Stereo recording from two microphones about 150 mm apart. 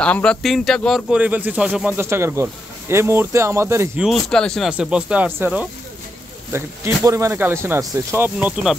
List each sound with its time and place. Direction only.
0.0 s speech: 5° left (ahead or behind)
1.1 s speech: 10° right (ahead or behind)
4.0 s speech: 5° left (ahead or behind)